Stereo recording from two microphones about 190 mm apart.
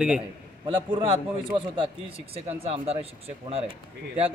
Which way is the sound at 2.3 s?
30° right (ahead or behind).